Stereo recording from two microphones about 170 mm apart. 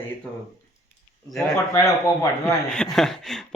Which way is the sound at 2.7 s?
5° left (ahead or behind).